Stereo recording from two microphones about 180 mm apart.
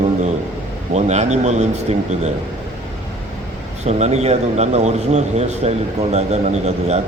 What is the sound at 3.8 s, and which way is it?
A man's voice, 40° right (ahead or behind).